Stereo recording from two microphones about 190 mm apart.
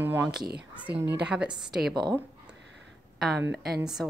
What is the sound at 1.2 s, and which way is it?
Speech, 5° right (ahead or behind).